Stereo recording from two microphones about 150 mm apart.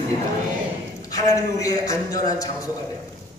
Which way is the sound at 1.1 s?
25° left (ahead or behind).